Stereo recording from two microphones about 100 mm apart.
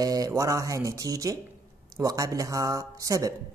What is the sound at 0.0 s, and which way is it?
Speech, 35° right (ahead or behind).